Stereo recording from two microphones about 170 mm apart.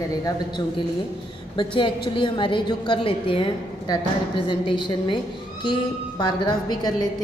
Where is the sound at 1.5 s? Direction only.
30° left (ahead or behind).